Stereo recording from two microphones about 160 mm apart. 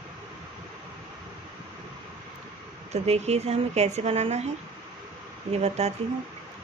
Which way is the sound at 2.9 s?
40° right (ahead or behind).